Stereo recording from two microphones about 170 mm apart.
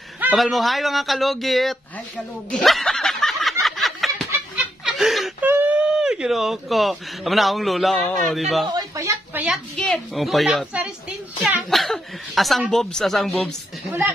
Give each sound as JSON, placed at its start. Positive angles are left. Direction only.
{"t": 0.2, "sound": "speech", "side_deg": -5}
{"t": 4.8, "sound": "snicker", "side_deg": 0}
{"t": 5.5, "sound": "speech", "side_deg": -10}
{"t": 8.6, "sound": "a sound", "side_deg": -20}
{"t": 9.5, "sound": "speech", "side_deg": 0}